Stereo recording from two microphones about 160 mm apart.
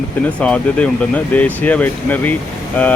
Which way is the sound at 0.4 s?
5° left (ahead or behind).